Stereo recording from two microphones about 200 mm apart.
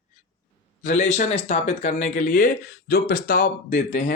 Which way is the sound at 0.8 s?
40° left (ahead or behind).